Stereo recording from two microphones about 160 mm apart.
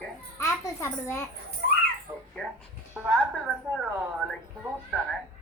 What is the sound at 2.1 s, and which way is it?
Dog, 10° right (ahead or behind).